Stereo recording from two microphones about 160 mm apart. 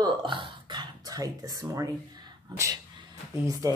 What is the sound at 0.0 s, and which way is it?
Speech, 30° right (ahead or behind).